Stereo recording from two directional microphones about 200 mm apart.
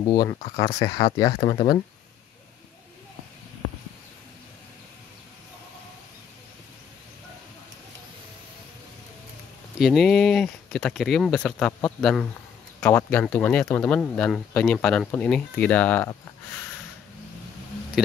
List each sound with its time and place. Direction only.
0.0 s speech: 20° left (ahead or behind)
9.8 s speech: centre (ahead or behind)
18.0 s speech: centre (ahead or behind)